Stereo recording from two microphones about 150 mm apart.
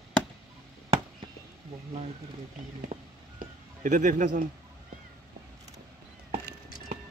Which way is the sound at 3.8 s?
60° right (ahead or behind).